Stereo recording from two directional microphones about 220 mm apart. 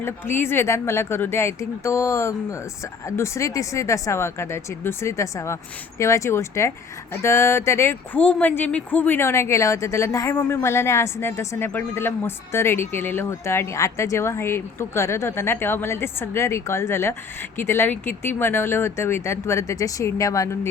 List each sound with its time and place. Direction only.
0.0 s speech: 10° left (ahead or behind)